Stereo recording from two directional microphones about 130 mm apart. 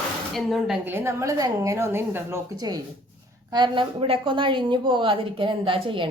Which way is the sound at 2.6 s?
30° right (ahead or behind).